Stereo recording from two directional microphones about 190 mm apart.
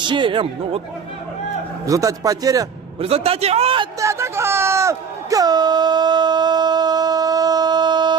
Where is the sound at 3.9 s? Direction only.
15° right (ahead or behind).